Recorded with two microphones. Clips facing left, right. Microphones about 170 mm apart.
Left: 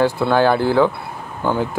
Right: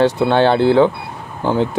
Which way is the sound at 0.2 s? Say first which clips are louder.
Right 2 dB; 25° right (ahead or behind).